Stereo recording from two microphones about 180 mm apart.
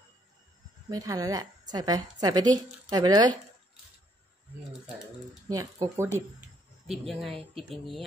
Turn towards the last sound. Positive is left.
turn(degrees=0)  # may be behind; listen again after turning